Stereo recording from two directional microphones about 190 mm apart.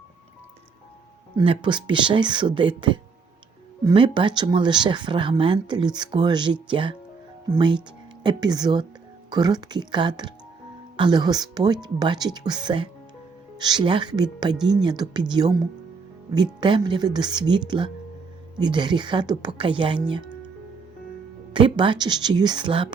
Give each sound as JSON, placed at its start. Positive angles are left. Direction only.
{"t": 1.4, "sound": "speech", "side_deg": -25}
{"t": 8.2, "sound": "speech", "side_deg": -25}
{"t": 21.5, "sound": "speech", "side_deg": -25}